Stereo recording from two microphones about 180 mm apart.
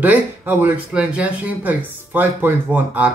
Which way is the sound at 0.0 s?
10° right (ahead or behind).